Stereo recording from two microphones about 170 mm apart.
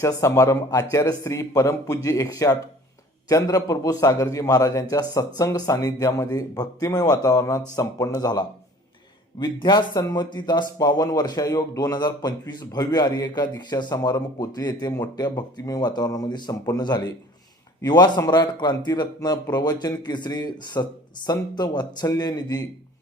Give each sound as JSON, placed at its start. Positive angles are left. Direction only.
{"t": 0.0, "sound": "speech", "side_deg": 15}